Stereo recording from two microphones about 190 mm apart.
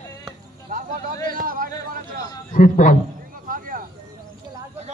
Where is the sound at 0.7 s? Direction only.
45° right (ahead or behind).